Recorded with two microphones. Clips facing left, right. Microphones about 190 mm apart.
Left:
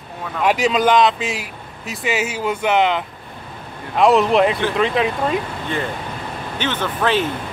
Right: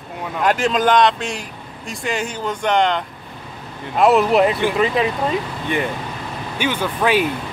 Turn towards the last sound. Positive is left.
turn(degrees=-10)  # may be behind; listen again after turning